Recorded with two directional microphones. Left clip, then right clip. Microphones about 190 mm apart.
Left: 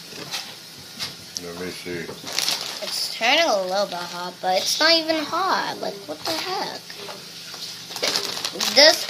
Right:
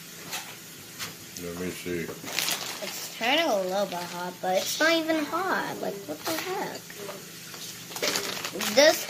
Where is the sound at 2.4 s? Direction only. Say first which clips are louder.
Left 5 dB; 20° left (ahead or behind).